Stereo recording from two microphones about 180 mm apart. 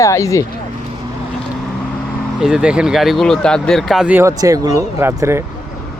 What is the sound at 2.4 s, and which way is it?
Speech, 5° right (ahead or behind).